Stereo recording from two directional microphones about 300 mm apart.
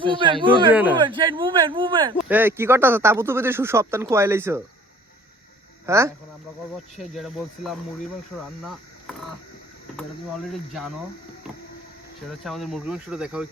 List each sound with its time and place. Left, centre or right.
0.0 s speech: centre
0.7 s speech: centre
0.9 s speech: centre
2.1 s speech: centre
5.8 s speech: centre
8.6 s a sound: centre
10.0 s speech: centre
12.4 s speech: centre